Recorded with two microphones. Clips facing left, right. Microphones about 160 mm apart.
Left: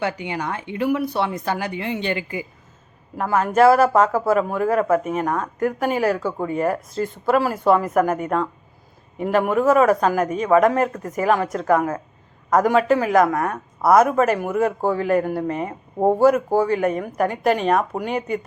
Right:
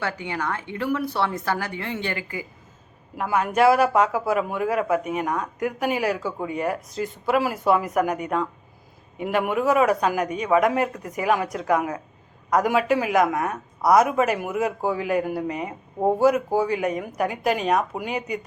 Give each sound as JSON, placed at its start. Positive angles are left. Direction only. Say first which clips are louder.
{"t": 0.0, "sound": "speech", "louder": "left 3 dB", "side_deg": 20}
{"t": 3.2, "sound": "speech", "louder": "left 4 dB", "side_deg": 40}
{"t": 16.0, "sound": "speech", "louder": "left 3 dB", "side_deg": 20}
{"t": 16.2, "sound": "speech", "louder": "left 3 dB", "side_deg": 45}